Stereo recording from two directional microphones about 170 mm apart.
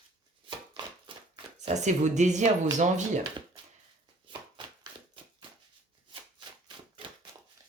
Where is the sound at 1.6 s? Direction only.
45° right (ahead or behind).